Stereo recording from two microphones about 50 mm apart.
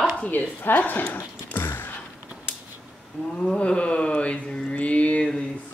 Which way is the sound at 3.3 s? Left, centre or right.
Left.